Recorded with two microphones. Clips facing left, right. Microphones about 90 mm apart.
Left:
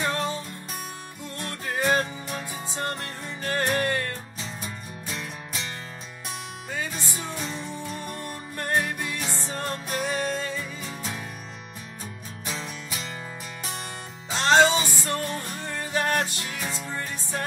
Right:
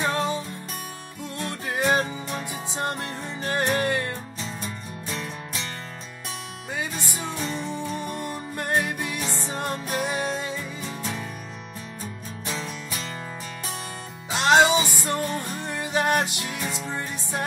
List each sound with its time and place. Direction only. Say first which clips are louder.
0.1 s music: right 3 dB; 15° right (ahead or behind)
1.4 s music: right 1 dB; 15° right (ahead or behind)
4.4 s music: right 2 dB; 5° left (ahead or behind)
6.7 s music: right 2 dB; 15° right (ahead or behind)
11.0 s music: right 3 dB; 5° left (ahead or behind)
12.6 s music: right 2 dB; 5° left (ahead or behind)
14.3 s music: right 1 dB; 15° right (ahead or behind)